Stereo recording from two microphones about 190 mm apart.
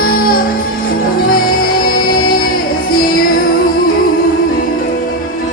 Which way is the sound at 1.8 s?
50° left (ahead or behind).